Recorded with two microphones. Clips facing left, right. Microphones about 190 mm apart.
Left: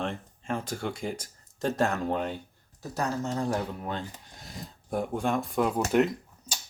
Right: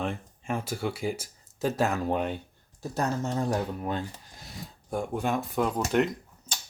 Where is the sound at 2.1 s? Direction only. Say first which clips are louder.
Right 2 dB; 15° right (ahead or behind).